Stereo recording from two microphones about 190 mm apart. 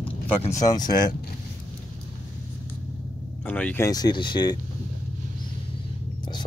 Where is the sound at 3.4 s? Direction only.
10° left (ahead or behind).